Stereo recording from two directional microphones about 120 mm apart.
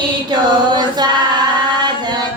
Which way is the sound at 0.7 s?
35° right (ahead or behind).